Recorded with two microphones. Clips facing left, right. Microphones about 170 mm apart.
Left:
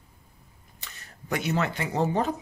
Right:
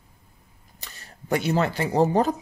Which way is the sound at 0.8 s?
30° right (ahead or behind).